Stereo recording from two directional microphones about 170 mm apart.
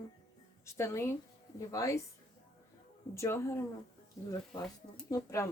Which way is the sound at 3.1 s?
15° left (ahead or behind).